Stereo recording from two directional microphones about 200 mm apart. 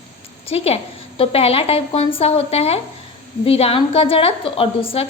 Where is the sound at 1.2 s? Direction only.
30° left (ahead or behind).